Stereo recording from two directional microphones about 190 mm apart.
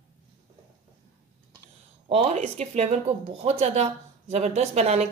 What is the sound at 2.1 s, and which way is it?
Speech, 35° right (ahead or behind).